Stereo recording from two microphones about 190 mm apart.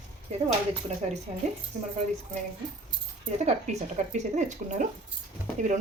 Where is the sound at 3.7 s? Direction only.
35° right (ahead or behind).